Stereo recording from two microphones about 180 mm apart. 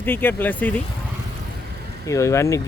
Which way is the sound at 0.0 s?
10° left (ahead or behind).